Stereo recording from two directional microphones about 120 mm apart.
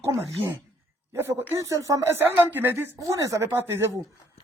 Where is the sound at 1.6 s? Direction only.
30° right (ahead or behind).